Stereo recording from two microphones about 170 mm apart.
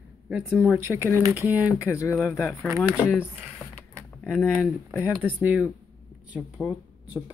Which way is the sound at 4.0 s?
5° left (ahead or behind).